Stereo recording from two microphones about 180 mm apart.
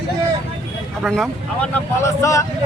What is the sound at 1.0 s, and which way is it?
Speech, centre (ahead or behind).